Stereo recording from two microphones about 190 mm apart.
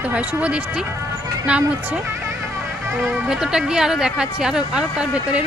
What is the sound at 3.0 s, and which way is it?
Speech, centre (ahead or behind).